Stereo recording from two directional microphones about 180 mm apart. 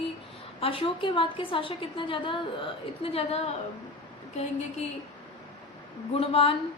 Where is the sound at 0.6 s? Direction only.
30° left (ahead or behind).